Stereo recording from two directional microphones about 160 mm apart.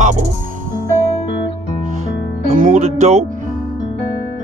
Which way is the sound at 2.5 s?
50° right (ahead or behind).